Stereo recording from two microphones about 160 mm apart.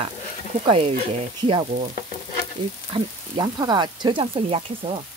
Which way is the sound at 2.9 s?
30° right (ahead or behind).